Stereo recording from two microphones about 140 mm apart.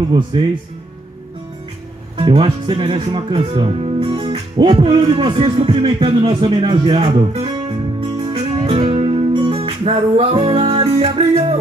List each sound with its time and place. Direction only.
0.1 s speech: 35° right (ahead or behind)
2.1 s speech: 40° right (ahead or behind)
8.3 s music: 45° right (ahead or behind)